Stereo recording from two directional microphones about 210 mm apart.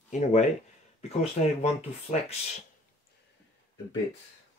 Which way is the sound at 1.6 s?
30° left (ahead or behind).